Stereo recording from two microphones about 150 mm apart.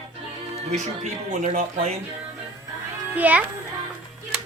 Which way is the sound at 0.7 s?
55° right (ahead or behind).